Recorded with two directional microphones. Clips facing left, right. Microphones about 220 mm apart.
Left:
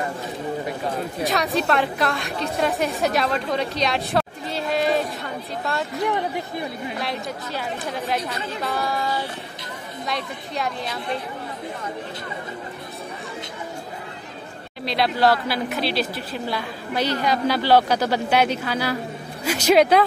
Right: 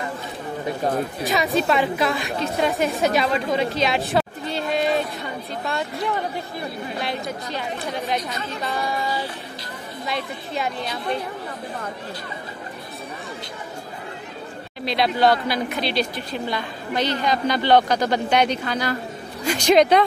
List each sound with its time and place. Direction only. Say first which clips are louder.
0.8 s speech: right 7 dB; 45° right (ahead or behind)
1.2 s a woman's voice: even; centre (ahead or behind)
7.0 s a woman's voice: right 3 dB; centre (ahead or behind)
14.9 s a woman's voice: right 1 dB; centre (ahead or behind)